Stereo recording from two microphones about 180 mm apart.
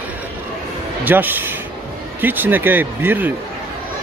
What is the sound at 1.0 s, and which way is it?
Speech, 10° right (ahead or behind).